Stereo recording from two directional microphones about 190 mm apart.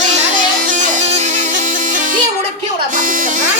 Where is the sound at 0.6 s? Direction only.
40° right (ahead or behind).